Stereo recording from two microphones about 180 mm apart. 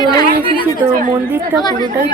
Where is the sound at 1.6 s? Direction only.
25° left (ahead or behind).